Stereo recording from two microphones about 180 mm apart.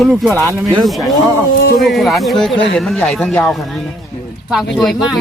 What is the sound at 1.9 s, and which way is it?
Speech, centre (ahead or behind).